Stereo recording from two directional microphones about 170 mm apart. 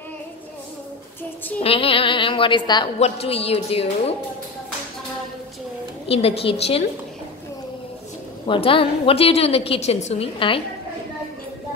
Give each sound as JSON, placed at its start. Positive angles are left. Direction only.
{"t": 1.6, "sound": "a woman's voice", "side_deg": 35}
{"t": 6.0, "sound": "a woman's voice", "side_deg": 35}
{"t": 8.5, "sound": "a woman's voice", "side_deg": 30}